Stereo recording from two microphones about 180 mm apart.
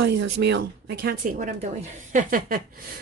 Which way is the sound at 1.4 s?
40° right (ahead or behind).